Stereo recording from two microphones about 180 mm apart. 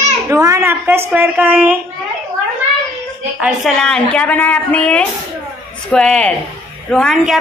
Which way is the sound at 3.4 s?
Centre (ahead or behind).